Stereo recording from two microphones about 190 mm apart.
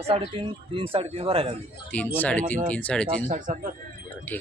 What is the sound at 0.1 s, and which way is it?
Speech, 30° right (ahead or behind).